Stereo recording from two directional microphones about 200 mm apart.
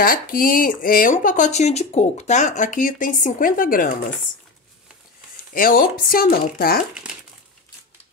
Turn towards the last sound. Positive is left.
turn(degrees=50)  # may be behind; listen again after turning